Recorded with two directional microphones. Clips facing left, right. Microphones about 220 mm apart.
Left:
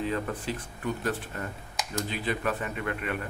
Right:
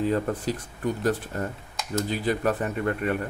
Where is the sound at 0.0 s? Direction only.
40° right (ahead or behind).